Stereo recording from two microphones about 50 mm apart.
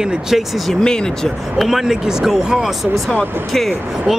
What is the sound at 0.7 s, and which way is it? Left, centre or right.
Speech, centre.